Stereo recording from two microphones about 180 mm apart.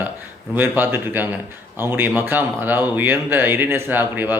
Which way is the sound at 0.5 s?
10° right (ahead or behind).